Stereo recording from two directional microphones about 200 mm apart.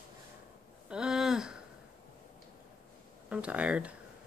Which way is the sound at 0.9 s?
5° right (ahead or behind).